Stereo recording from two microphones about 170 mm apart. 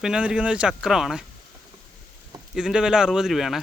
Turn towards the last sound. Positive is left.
turn(degrees=0)  # may be behind; listen again after turning